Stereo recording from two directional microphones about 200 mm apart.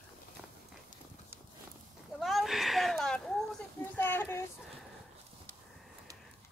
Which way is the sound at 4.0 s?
10° left (ahead or behind).